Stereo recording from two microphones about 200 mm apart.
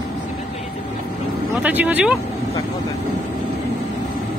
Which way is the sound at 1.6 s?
10° right (ahead or behind).